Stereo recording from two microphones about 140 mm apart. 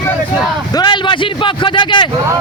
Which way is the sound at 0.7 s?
30° left (ahead or behind).